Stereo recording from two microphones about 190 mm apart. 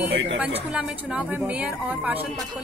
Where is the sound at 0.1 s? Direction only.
75° right (ahead or behind).